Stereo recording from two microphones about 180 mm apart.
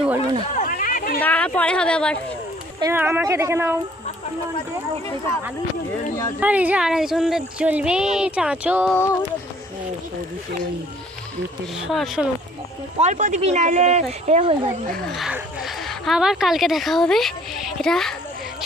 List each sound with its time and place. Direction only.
0.5 s a sound: 45° left (ahead or behind)
1.2 s speech: 10° left (ahead or behind)
2.8 s speech: 10° right (ahead or behind)
6.4 s speech: 10° right (ahead or behind)
8.9 s music: 15° left (ahead or behind)
11.8 s speech: centre (ahead or behind)
13.0 s speech: 40° right (ahead or behind)
15.0 s speech: centre (ahead or behind)